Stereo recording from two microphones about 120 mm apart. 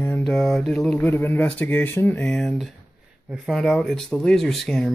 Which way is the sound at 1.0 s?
15° left (ahead or behind).